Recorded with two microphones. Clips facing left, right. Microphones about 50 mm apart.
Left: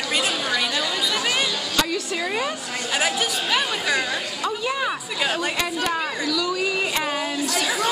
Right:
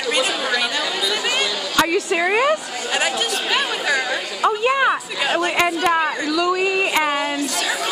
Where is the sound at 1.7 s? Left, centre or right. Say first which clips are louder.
Right 10 dB; right.